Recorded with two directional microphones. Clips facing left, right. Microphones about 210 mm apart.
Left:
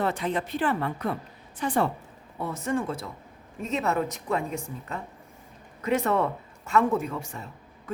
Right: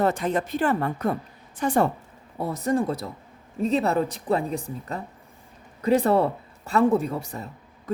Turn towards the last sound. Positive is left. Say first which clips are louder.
# right 6 dB
turn(degrees=-35)  # may be behind; listen again after turning